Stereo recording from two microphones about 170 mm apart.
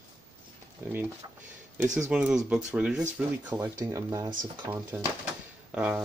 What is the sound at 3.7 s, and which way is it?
Speech, 20° right (ahead or behind).